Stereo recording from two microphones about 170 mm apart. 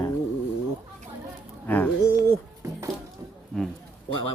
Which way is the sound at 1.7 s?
10° left (ahead or behind).